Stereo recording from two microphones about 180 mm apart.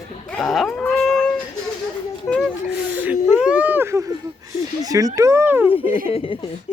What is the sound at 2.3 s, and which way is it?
Whimper, 5° left (ahead or behind).